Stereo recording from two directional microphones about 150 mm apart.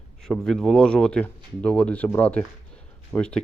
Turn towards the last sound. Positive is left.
turn(degrees=5)  # may be behind; listen again after turning